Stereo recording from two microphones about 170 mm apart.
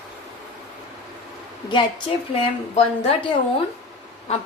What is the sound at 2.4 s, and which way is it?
A woman's voice, 35° left (ahead or behind).